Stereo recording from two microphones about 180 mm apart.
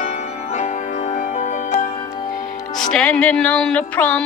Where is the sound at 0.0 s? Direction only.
40° left (ahead or behind).